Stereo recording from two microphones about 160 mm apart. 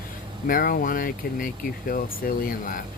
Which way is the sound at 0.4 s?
60° left (ahead or behind).